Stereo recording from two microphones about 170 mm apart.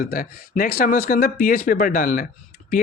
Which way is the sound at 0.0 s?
55° left (ahead or behind).